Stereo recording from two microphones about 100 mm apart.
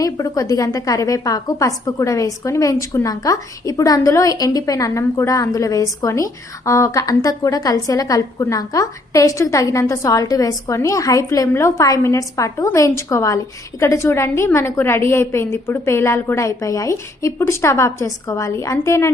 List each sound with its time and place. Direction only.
0.0 s a woman's voice: 35° left (ahead or behind)